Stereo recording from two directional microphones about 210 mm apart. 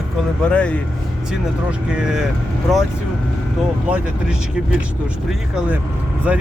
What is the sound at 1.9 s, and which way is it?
Speech, 5° right (ahead or behind).